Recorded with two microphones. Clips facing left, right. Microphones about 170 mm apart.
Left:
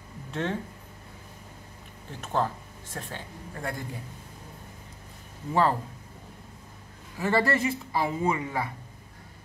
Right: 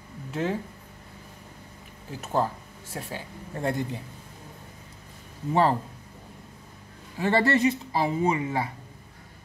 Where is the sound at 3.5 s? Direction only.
25° right (ahead or behind).